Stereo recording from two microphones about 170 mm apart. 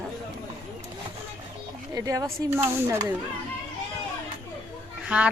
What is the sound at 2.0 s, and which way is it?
Speech, 20° right (ahead or behind).